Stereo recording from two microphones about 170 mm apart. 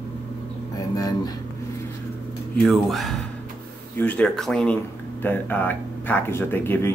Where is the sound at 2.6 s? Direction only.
Centre (ahead or behind).